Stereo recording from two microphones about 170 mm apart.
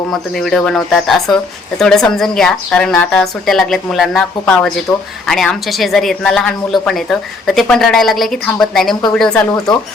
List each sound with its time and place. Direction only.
0.1 s a woman's voice: centre (ahead or behind)